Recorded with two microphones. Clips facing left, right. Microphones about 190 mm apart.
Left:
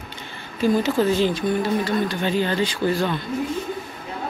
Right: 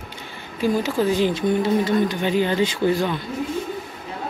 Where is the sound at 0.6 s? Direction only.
10° right (ahead or behind).